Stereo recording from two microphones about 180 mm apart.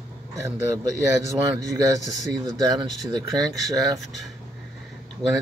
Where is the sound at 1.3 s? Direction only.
20° right (ahead or behind).